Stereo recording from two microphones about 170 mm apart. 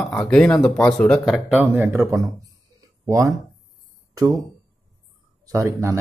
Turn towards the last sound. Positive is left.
turn(degrees=-20)  # may be behind; listen again after turning